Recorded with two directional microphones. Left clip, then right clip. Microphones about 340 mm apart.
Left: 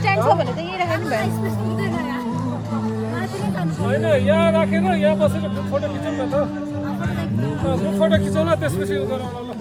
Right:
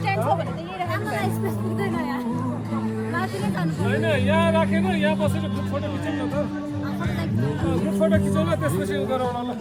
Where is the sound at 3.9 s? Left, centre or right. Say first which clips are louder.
Left 5 dB; left.